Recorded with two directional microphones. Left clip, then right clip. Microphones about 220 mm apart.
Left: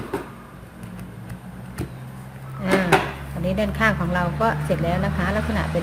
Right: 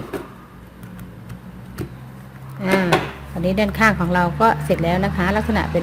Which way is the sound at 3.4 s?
40° right (ahead or behind).